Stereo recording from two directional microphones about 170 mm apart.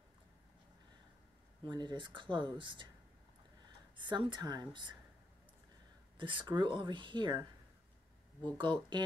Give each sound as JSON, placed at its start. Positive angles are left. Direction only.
{"t": 1.7, "sound": "speech", "side_deg": -25}
{"t": 3.9, "sound": "speech", "side_deg": -30}
{"t": 6.1, "sound": "speech", "side_deg": -30}